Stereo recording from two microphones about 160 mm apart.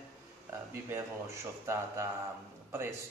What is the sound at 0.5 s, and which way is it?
A man's voice, 15° right (ahead or behind).